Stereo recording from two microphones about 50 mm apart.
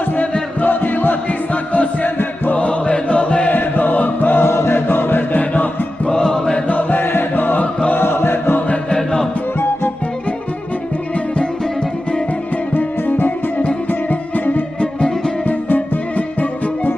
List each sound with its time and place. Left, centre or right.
0.6 s music: left
3.5 s music: left
4.5 s choir: left
5.4 s music: left
6.1 s chant: centre
6.7 s music: left
7.9 s chant: left
8.9 s music: centre
14.8 s music: centre
15.4 s music: left